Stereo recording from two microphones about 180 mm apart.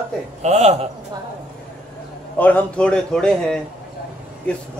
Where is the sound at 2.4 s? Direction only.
10° left (ahead or behind).